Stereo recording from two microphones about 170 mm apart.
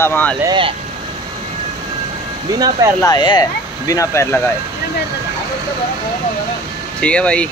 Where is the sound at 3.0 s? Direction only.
25° left (ahead or behind).